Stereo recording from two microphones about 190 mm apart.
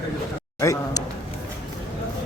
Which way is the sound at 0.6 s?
15° left (ahead or behind).